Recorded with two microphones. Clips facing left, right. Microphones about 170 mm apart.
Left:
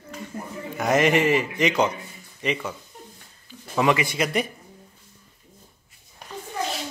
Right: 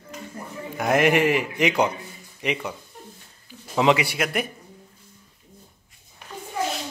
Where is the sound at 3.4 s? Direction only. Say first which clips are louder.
Right 2 dB; 15° right (ahead or behind).